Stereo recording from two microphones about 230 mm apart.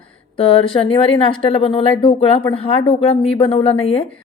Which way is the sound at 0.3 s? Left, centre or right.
Left.